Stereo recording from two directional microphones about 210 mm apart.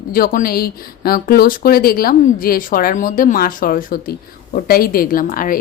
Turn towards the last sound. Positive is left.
turn(degrees=40)  # may be behind; listen again after turning